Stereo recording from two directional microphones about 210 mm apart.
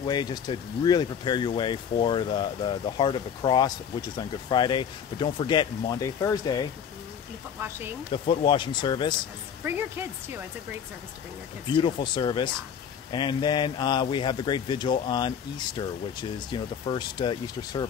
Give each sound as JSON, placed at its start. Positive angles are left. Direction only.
{"t": 0.0, "sound": "speech", "side_deg": 20}
{"t": 8.1, "sound": "speech", "side_deg": 25}
{"t": 9.7, "sound": "speech", "side_deg": -10}
{"t": 11.6, "sound": "speech", "side_deg": 20}